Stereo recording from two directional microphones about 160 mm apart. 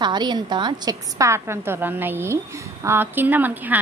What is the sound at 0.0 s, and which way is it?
A woman's voice, 25° right (ahead or behind).